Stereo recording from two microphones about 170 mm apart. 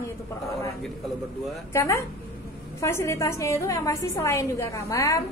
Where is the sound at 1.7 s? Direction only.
15° left (ahead or behind).